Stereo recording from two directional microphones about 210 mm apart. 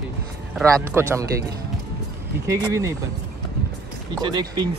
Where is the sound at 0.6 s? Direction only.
10° right (ahead or behind).